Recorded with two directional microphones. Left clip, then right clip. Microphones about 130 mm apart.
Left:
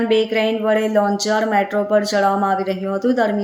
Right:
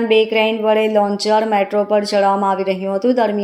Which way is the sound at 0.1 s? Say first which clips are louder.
Right 4 dB; 15° right (ahead or behind).